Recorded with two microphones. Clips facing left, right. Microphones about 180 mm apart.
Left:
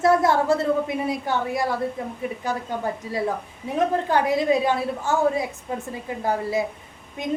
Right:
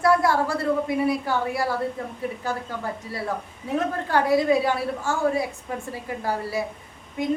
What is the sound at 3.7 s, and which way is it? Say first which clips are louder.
A woman's voice: left 2 dB; 20° left (ahead or behind).